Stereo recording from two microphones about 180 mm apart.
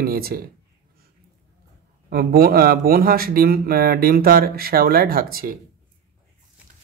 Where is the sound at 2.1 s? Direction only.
55° right (ahead or behind).